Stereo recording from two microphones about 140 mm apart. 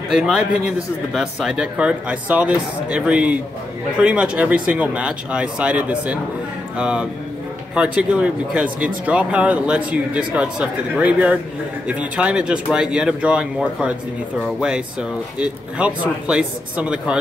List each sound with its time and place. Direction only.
0.1 s a man's voice: 5° right (ahead or behind)